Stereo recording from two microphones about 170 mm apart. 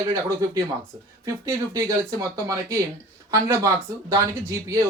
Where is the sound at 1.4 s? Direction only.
20° right (ahead or behind).